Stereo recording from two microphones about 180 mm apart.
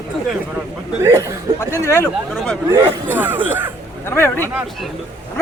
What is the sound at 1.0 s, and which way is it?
Speech, 15° right (ahead or behind).